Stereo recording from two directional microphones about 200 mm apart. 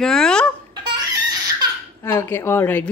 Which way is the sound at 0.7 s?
20° right (ahead or behind).